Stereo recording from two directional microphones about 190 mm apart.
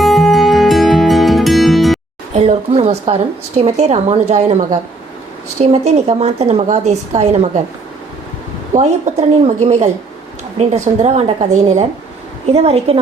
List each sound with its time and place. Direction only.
0.0 s music: centre (ahead or behind)
2.3 s speech: 35° right (ahead or behind)
8.7 s speech: 35° right (ahead or behind)